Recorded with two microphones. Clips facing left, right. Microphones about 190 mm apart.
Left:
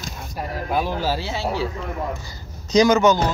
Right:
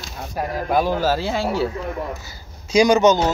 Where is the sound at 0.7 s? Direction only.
45° right (ahead or behind).